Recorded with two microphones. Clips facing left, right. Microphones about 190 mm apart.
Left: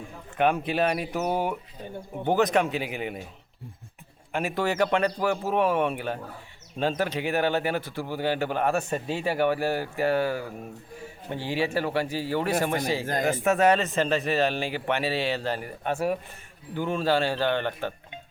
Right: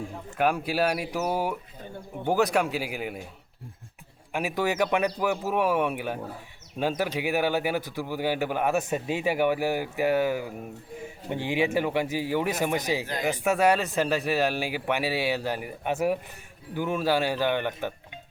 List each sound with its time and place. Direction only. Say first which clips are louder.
0.3 s speech: left 1 dB; 5° right (ahead or behind)
4.3 s a man's voice: even; 10° right (ahead or behind)